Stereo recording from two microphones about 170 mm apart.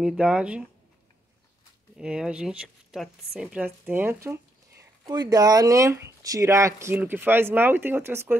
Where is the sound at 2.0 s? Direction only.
5° right (ahead or behind).